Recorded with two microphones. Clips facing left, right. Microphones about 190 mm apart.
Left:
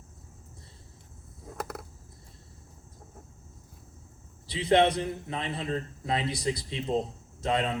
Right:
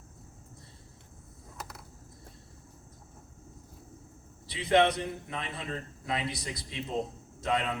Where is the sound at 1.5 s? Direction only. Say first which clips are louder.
Left 9 dB; 55° left (ahead or behind).